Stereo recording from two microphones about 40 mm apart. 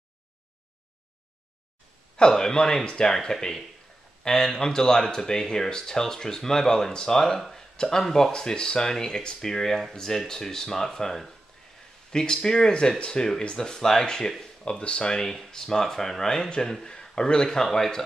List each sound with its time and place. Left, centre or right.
2.1 s speech: centre
14.6 s speech: left
15.2 s speech: centre